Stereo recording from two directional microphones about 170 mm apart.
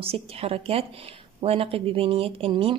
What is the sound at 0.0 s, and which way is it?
A woman's voice, 35° right (ahead or behind).